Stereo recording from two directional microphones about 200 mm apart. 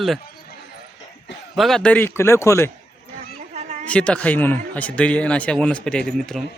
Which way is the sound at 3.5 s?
35° right (ahead or behind).